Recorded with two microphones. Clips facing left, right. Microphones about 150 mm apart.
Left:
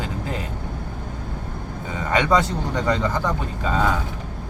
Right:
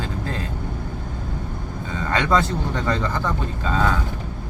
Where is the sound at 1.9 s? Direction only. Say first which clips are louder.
Left 1 dB; 15° left (ahead or behind).